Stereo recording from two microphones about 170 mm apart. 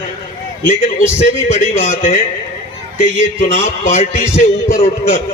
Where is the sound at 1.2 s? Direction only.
40° left (ahead or behind).